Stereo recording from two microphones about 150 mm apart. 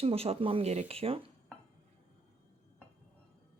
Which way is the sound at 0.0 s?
40° right (ahead or behind).